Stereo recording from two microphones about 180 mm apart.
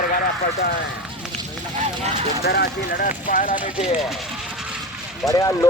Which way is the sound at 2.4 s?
60° left (ahead or behind).